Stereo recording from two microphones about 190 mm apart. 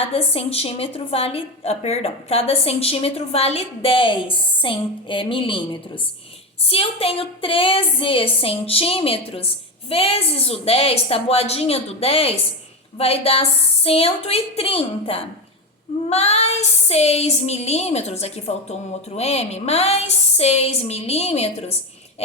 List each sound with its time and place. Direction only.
0.1 s a woman's voice: 30° left (ahead or behind)